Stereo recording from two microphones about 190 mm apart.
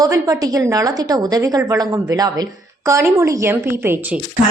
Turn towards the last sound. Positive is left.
turn(degrees=-10)  # may be behind; listen again after turning